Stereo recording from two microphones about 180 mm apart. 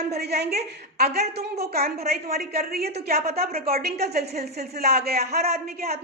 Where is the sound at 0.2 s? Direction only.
65° right (ahead or behind).